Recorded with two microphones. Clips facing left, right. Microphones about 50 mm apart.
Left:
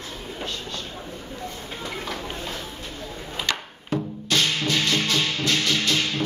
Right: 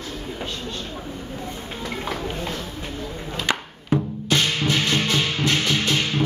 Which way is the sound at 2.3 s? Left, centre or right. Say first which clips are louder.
Right 3 dB; centre.